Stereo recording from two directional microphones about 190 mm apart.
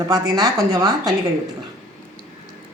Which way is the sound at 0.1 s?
20° right (ahead or behind).